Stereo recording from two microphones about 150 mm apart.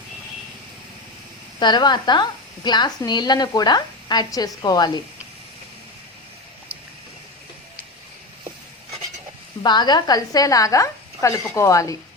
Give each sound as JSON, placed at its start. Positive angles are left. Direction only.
{"t": 1.5, "sound": "a woman's voice", "side_deg": 30}
{"t": 9.6, "sound": "a woman's voice", "side_deg": 30}